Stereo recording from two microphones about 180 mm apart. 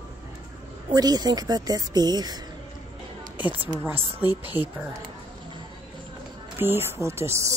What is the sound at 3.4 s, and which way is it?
Speech, 10° right (ahead or behind).